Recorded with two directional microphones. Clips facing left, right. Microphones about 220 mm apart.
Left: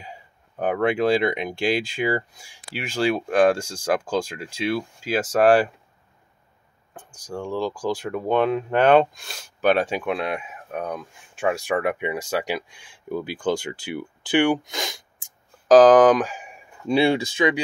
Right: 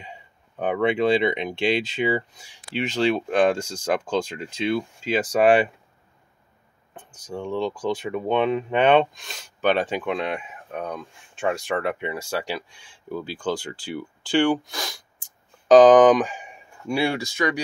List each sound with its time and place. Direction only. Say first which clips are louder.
0.0 s speech: left 1 dB; 5° left (ahead or behind)
7.4 s speech: even; 5° left (ahead or behind)
15.7 s speech: even; 5° left (ahead or behind)
16.8 s speech: left 5 dB; 25° left (ahead or behind)